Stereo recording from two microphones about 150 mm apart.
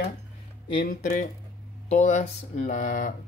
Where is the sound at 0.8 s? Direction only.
60° left (ahead or behind).